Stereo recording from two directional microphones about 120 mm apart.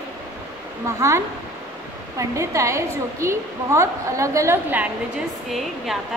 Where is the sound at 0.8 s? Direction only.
25° right (ahead or behind).